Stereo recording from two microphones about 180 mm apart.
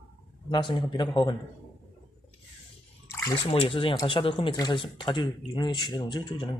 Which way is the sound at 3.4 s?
30° left (ahead or behind).